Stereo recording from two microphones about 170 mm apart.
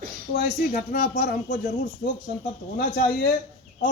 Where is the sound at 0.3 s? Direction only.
55° left (ahead or behind).